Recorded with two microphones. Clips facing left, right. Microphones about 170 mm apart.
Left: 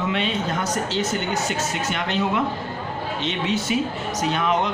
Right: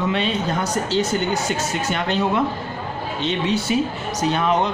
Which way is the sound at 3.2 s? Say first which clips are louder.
Right 4 dB; 35° right (ahead or behind).